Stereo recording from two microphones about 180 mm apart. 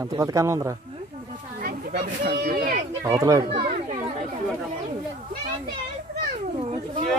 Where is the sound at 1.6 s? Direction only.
50° right (ahead or behind).